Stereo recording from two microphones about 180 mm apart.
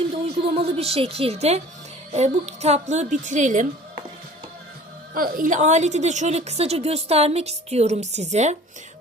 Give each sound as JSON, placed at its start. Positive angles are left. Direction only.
{"t": 0.5, "sound": "a woman's voice", "side_deg": -35}
{"t": 5.1, "sound": "a woman's voice", "side_deg": -50}